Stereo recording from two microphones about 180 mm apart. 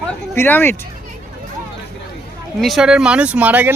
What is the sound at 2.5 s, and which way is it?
Speech, centre (ahead or behind).